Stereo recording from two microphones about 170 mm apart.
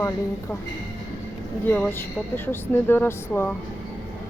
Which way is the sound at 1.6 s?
10° left (ahead or behind).